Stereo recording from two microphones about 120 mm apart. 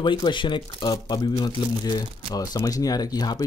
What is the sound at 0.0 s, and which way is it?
Speech, 40° left (ahead or behind).